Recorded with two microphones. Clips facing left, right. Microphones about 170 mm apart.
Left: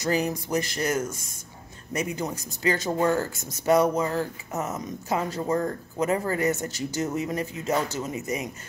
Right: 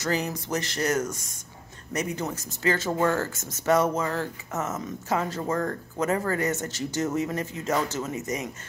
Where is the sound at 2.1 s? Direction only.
15° left (ahead or behind).